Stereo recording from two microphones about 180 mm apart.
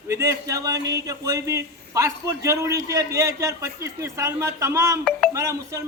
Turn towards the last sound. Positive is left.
turn(degrees=-15)  # may be behind; listen again after turning